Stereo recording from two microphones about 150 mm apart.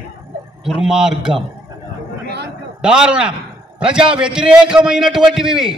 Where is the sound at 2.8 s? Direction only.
5° right (ahead or behind).